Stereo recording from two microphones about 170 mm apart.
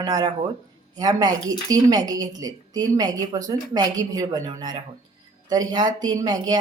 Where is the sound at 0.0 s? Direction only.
20° right (ahead or behind).